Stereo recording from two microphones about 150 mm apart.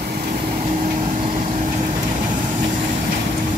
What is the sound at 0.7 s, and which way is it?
Vehicle, 55° right (ahead or behind).